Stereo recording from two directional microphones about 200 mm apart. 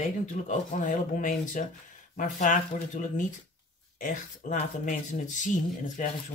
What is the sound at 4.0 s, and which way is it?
Speech, 40° left (ahead or behind).